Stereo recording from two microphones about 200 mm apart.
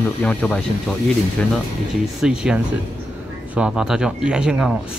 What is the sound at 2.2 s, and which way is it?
Speech, 5° right (ahead or behind).